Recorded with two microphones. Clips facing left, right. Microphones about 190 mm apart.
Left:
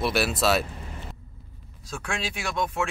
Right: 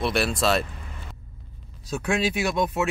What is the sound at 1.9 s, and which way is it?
Speech, 20° right (ahead or behind).